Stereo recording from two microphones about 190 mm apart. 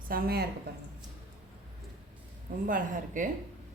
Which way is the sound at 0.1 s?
55° right (ahead or behind).